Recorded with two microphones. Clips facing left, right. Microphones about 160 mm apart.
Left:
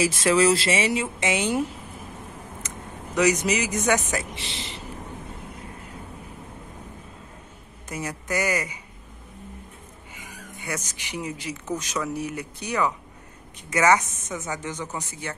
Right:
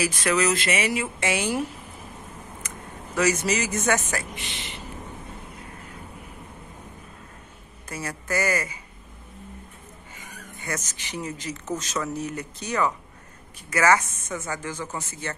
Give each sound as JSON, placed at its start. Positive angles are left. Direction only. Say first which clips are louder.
{"t": 0.0, "sound": "a woman's voice", "louder": "left 4 dB", "side_deg": 25}
{"t": 3.2, "sound": "speech", "louder": "left 2 dB", "side_deg": 15}
{"t": 4.4, "sound": "speech", "louder": "left 2 dB", "side_deg": 90}
{"t": 7.9, "sound": "speech", "louder": "even", "side_deg": 15}
{"t": 10.1, "sound": "speech", "louder": "left 2 dB", "side_deg": 15}